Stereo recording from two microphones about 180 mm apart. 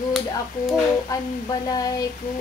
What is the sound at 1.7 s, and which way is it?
Speech, 20° left (ahead or behind).